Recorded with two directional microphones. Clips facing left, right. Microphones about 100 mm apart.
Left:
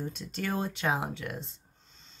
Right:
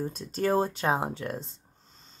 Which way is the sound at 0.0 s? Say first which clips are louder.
Right 6 dB; 35° right (ahead or behind).